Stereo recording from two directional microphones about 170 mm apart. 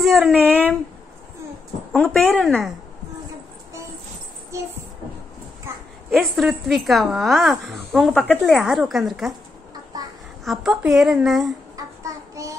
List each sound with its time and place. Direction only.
0.0 s speech: centre (ahead or behind)
0.4 s speech: 10° left (ahead or behind)
2.1 s speech: 5° left (ahead or behind)
4.5 s music: 15° right (ahead or behind)
5.7 s a sound: 15° right (ahead or behind)
6.0 s speech: centre (ahead or behind)
10.4 s speech: centre (ahead or behind)
11.7 s child singing: 20° right (ahead or behind)